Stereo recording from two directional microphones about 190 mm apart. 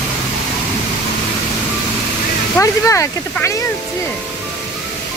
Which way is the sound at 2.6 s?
15° left (ahead or behind).